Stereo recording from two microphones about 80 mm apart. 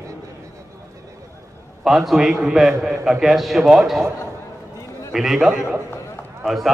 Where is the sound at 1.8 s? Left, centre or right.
Centre.